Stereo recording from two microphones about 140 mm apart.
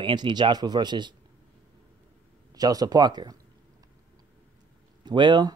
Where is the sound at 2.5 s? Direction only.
25° right (ahead or behind).